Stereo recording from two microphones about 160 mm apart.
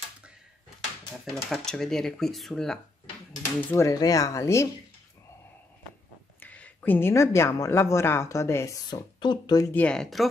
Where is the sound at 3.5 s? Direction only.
15° left (ahead or behind).